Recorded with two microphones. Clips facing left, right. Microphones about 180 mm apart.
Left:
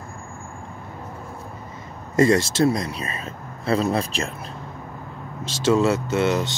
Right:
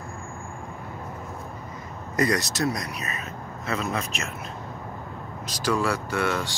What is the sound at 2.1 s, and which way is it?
Speech, 25° left (ahead or behind).